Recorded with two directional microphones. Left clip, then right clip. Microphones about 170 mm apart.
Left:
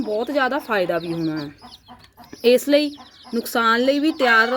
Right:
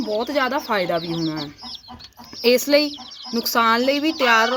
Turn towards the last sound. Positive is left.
turn(degrees=45)  # may be behind; listen again after turning